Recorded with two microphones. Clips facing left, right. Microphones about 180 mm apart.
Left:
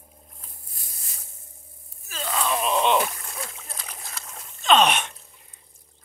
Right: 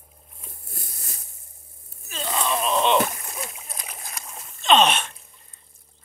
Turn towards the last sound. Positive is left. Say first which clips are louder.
# right 1 dB
turn(degrees=10)  # may be behind; listen again after turning